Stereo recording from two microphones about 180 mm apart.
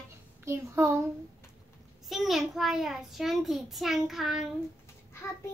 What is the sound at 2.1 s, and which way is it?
A child's voice, centre (ahead or behind).